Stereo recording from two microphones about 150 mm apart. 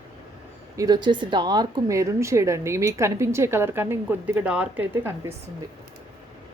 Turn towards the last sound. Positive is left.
turn(degrees=-10)  # may be behind; listen again after turning